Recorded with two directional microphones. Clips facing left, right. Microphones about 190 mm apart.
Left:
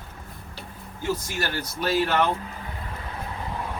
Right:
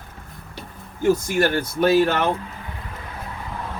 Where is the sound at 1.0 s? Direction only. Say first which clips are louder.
Right 10 dB; 50° right (ahead or behind).